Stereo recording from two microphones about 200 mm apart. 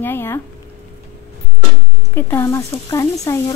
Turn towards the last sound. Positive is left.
turn(degrees=15)  # may be behind; listen again after turning